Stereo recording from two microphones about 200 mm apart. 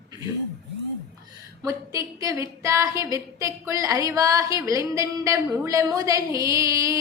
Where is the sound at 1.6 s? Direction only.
15° right (ahead or behind).